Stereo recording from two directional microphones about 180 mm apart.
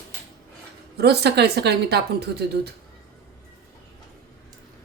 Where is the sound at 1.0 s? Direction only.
65° right (ahead or behind).